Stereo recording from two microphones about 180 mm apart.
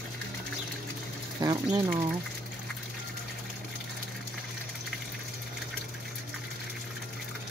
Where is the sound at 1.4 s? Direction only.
20° right (ahead or behind).